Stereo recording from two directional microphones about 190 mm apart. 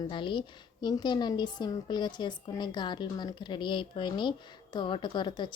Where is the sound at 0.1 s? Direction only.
25° left (ahead or behind).